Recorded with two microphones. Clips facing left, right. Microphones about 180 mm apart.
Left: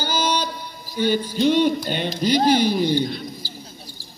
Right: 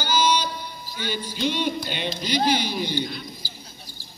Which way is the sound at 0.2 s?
55° left (ahead or behind).